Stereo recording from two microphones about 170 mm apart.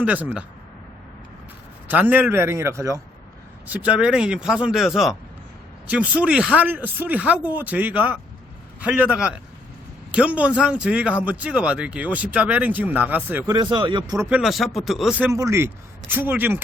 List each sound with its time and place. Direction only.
0.0 s speech: 10° right (ahead or behind)
1.9 s speech: 10° right (ahead or behind)
3.7 s speech: 5° right (ahead or behind)
13.6 s speech: 25° right (ahead or behind)
14.3 s speech: 5° right (ahead or behind)
15.3 s speech: 15° right (ahead or behind)